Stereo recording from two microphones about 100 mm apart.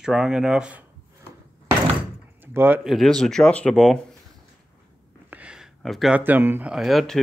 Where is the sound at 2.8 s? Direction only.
Centre (ahead or behind).